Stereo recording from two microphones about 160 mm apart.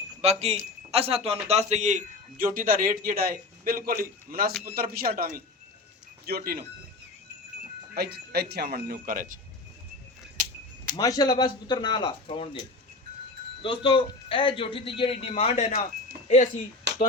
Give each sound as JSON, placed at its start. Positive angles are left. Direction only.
{"t": 0.2, "sound": "a man's voice", "side_deg": -40}
{"t": 7.9, "sound": "speech", "side_deg": -80}
{"t": 10.9, "sound": "speech", "side_deg": 25}
{"t": 13.6, "sound": "a man's voice", "side_deg": 30}